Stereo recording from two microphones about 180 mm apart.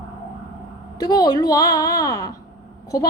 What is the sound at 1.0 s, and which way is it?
A woman's voice, 20° left (ahead or behind).